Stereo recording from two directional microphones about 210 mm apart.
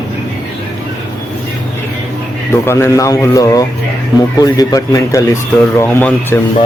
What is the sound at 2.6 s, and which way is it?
Speech, 15° left (ahead or behind).